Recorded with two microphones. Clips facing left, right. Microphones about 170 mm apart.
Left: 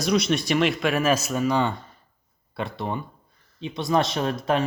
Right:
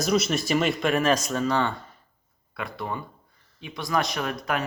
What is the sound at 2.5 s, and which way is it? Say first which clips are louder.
Speech: left 3 dB; 25° left (ahead or behind).